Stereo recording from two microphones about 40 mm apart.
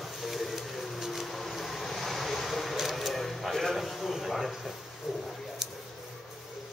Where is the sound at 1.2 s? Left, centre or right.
Centre.